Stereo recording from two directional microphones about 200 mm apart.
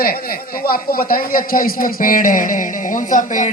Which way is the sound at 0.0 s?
50° left (ahead or behind).